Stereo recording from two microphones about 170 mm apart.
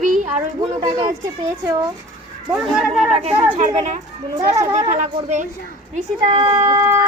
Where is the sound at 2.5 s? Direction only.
Centre (ahead or behind).